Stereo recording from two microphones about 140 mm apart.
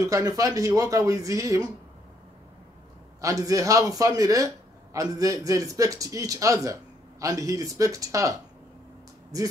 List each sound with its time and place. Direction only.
0.0 s a man's voice: 25° right (ahead or behind)
3.2 s a man's voice: 25° right (ahead or behind)